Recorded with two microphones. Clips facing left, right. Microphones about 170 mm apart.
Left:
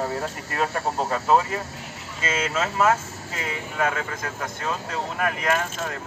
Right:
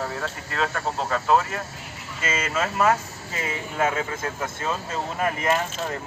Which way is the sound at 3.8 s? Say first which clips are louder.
Right 2 dB; 25° right (ahead or behind).